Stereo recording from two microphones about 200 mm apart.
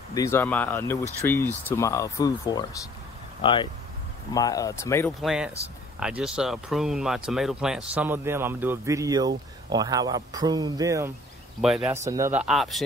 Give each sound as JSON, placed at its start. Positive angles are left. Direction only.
{"t": 0.1, "sound": "speech", "side_deg": 15}
{"t": 4.3, "sound": "speech", "side_deg": 20}
{"t": 5.2, "sound": "speech", "side_deg": -5}
{"t": 11.6, "sound": "speech", "side_deg": -5}